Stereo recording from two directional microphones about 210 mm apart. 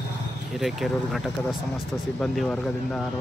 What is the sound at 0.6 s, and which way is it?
Speech, centre (ahead or behind).